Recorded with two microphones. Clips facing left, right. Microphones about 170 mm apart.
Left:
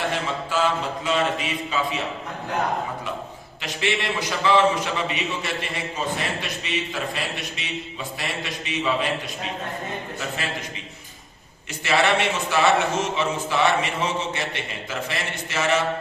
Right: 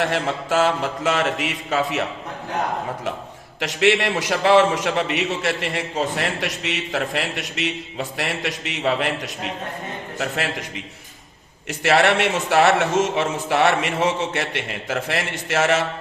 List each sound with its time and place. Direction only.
0.0 s a man's voice: 75° right (ahead or behind)
3.6 s a man's voice: 80° right